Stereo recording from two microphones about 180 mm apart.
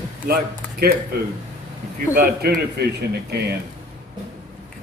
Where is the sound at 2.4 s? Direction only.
65° right (ahead or behind).